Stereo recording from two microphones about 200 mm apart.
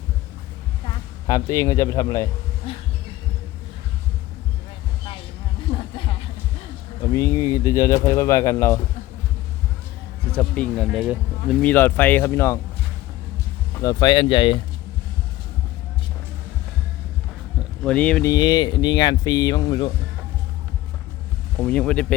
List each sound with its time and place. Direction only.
1.3 s speech: 15° left (ahead or behind)
5.7 s a sound: 25° left (ahead or behind)
7.1 s speech: 20° left (ahead or behind)
10.3 s speech: 5° left (ahead or behind)
13.8 s speech: 20° left (ahead or behind)
17.8 s speech: 5° left (ahead or behind); by 19.9 s 20° left (ahead or behind)
21.6 s speech: 5° left (ahead or behind)